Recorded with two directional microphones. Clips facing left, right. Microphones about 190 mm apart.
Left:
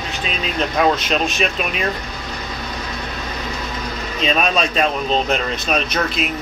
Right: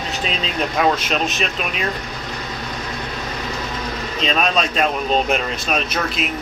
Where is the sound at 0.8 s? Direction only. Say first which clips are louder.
Left 1 dB; centre (ahead or behind).